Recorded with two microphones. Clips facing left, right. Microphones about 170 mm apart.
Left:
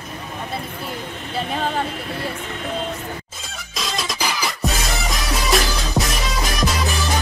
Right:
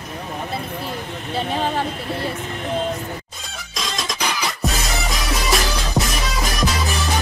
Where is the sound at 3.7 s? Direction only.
Centre (ahead or behind).